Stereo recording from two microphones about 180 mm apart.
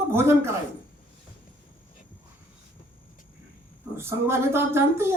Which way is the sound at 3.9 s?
15° right (ahead or behind).